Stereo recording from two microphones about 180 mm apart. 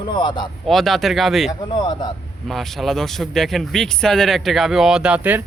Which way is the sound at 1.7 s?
25° left (ahead or behind).